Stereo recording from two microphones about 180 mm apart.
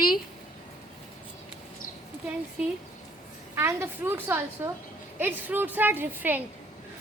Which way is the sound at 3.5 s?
15° right (ahead or behind).